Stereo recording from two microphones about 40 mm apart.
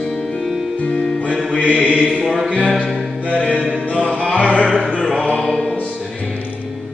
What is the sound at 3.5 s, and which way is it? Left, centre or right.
Music, left.